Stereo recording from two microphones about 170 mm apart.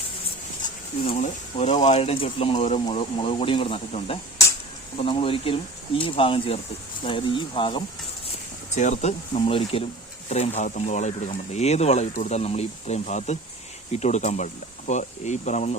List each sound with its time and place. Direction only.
1.0 s speech: 35° left (ahead or behind)
8.7 s speech: 45° left (ahead or behind)